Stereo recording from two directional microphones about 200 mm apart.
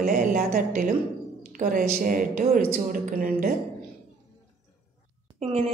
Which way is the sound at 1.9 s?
45° right (ahead or behind).